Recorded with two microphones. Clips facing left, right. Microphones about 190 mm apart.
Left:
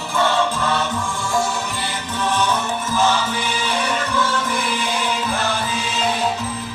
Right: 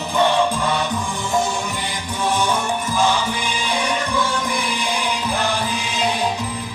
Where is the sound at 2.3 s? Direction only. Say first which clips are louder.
Right 1 dB; 10° right (ahead or behind).